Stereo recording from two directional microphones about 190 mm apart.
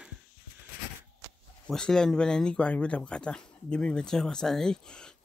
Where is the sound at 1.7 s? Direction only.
5° left (ahead or behind).